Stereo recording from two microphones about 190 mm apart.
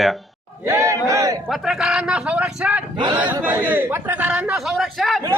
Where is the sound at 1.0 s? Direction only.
15° right (ahead or behind).